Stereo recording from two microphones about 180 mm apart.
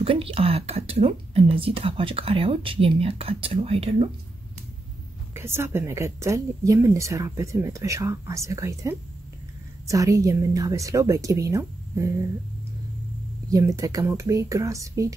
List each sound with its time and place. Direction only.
0.0 s speech: 30° right (ahead or behind)
5.3 s a woman's voice: 15° right (ahead or behind)
13.5 s a woman's voice: 20° right (ahead or behind)